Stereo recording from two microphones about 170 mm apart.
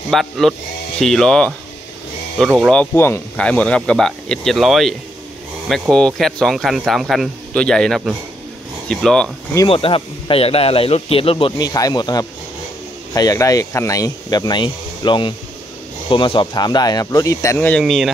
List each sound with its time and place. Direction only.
0.1 s speech: centre (ahead or behind)
2.6 s speech: 5° left (ahead or behind)
9.7 s speech: 30° left (ahead or behind); by 18.1 s centre (ahead or behind)